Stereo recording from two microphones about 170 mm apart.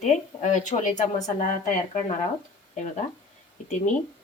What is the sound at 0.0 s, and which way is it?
Speech, 45° left (ahead or behind).